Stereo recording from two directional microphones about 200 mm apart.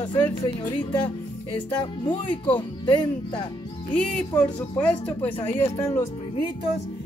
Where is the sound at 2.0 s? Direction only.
25° left (ahead or behind).